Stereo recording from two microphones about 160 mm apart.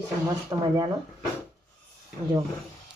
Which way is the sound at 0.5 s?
20° right (ahead or behind).